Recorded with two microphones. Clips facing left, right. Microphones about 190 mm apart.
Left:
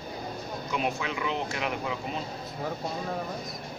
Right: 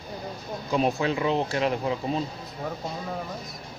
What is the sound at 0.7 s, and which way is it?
Speech, 35° right (ahead or behind).